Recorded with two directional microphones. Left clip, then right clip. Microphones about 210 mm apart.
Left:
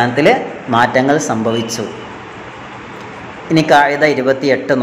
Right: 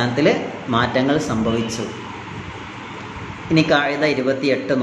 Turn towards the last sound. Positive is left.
turn(degrees=15)  # may be behind; listen again after turning